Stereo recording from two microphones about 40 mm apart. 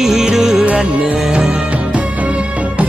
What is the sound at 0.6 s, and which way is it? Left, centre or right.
Music, right.